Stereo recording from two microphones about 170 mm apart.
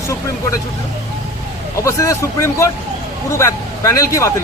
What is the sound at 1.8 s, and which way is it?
Speech, 20° left (ahead or behind).